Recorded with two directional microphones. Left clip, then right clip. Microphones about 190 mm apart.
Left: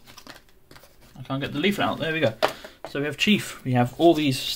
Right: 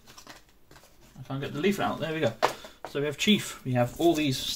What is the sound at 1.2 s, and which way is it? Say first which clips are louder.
Speech: left 4 dB; 40° left (ahead or behind).